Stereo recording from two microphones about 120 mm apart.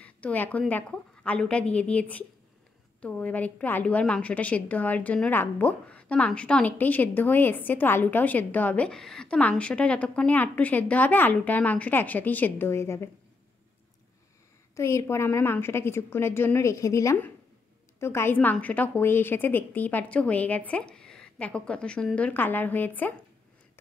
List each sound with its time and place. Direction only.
0.0 s a woman's voice: 10° left (ahead or behind)
14.8 s a woman's voice: 25° left (ahead or behind)